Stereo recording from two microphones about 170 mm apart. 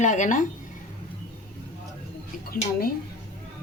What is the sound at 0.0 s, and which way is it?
Speech, 45° left (ahead or behind).